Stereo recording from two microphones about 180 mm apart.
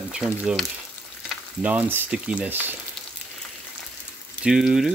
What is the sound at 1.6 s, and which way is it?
Speech, 10° right (ahead or behind).